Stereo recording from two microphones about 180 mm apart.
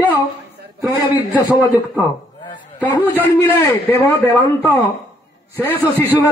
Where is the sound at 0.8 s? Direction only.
15° right (ahead or behind).